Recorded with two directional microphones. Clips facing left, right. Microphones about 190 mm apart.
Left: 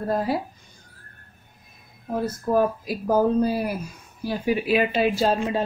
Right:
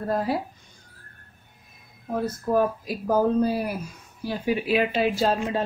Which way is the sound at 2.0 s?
5° left (ahead or behind).